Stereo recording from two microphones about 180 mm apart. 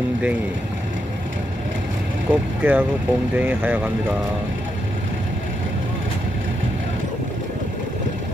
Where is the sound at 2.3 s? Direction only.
10° right (ahead or behind).